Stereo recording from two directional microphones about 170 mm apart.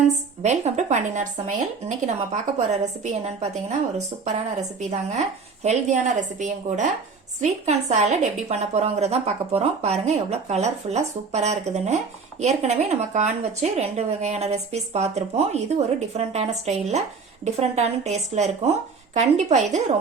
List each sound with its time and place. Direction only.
0.4 s a woman's voice: 40° right (ahead or behind)